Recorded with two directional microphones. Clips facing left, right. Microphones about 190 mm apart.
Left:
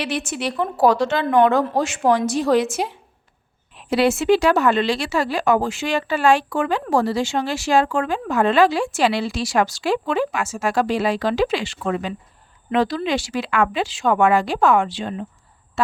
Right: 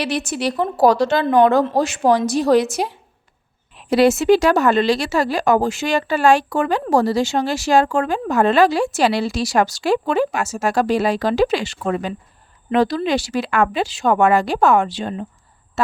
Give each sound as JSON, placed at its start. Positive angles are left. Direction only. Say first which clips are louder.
{"t": 0.0, "sound": "speech", "louder": "right 3 dB", "side_deg": -40}